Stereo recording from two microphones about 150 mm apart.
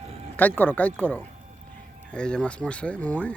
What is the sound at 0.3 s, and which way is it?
Speech, 10° left (ahead or behind).